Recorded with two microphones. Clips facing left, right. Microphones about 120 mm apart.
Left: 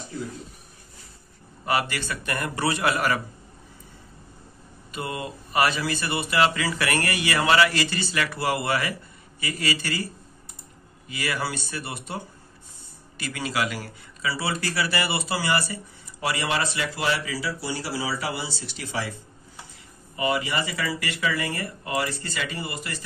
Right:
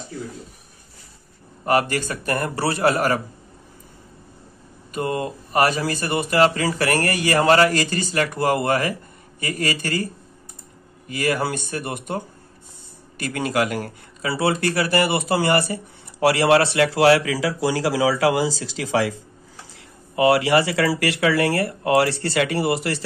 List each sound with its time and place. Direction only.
1.7 s a man's voice: 45° right (ahead or behind)
4.9 s speech: 45° right (ahead or behind)
11.1 s speech: 50° right (ahead or behind)
13.2 s a man's voice: 50° right (ahead or behind); by 23.0 s 90° right